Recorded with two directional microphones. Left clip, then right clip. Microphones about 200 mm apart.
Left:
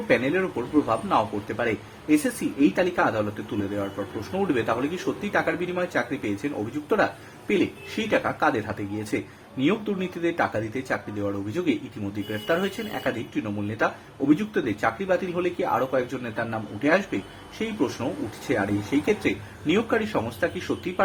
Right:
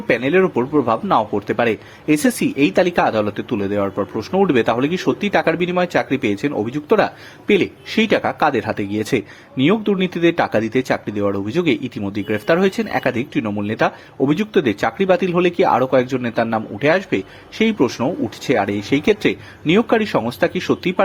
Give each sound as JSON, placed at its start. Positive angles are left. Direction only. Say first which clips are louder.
{"t": 0.1, "sound": "speech", "louder": "right 7 dB", "side_deg": -40}
{"t": 4.3, "sound": "speech", "louder": "right 9 dB", "side_deg": -40}